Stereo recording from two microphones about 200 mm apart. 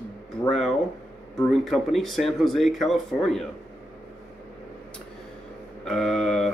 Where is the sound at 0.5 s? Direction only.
Centre (ahead or behind).